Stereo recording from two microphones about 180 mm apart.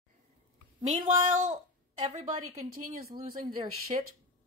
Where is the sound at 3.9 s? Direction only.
35° right (ahead or behind).